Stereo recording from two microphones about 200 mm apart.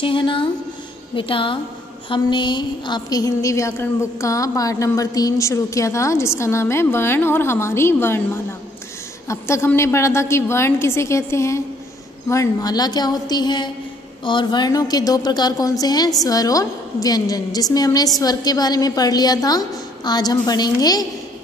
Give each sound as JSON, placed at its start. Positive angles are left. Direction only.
{"t": 0.0, "sound": "a woman's voice", "side_deg": 25}
{"t": 9.3, "sound": "a woman's voice", "side_deg": 15}